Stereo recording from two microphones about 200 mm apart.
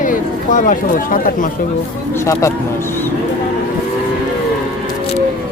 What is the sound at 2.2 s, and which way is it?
Speech, 15° left (ahead or behind).